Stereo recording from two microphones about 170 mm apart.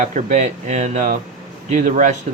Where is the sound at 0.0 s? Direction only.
45° right (ahead or behind).